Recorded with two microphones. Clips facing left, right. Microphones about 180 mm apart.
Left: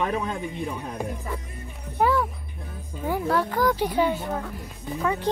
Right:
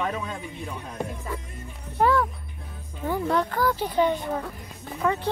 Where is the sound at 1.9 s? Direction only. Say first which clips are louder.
Right 1 dB; centre (ahead or behind).